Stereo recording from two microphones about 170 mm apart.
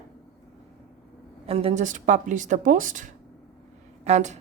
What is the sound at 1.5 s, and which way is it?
Speech, 40° right (ahead or behind).